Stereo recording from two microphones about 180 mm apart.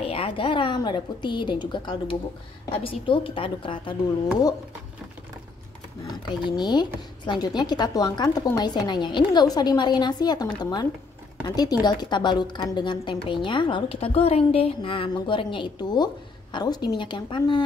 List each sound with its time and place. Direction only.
0.0 s a woman's voice: 30° left (ahead or behind)
6.5 s a woman's voice: 25° left (ahead or behind)